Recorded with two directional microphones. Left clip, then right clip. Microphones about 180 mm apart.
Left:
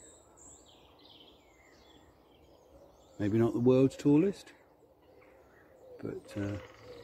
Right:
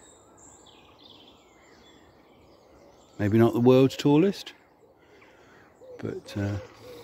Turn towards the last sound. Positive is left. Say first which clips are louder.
# right 5 dB
turn(degrees=-45)  # may be behind; listen again after turning